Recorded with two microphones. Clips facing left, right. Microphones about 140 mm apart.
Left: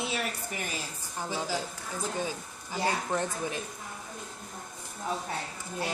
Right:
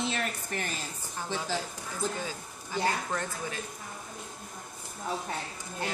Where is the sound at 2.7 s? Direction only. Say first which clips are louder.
Left 1 dB; 20° left (ahead or behind).